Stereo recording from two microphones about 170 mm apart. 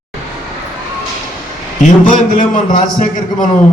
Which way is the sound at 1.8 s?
45° left (ahead or behind).